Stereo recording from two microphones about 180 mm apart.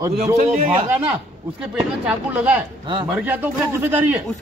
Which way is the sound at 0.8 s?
10° right (ahead or behind).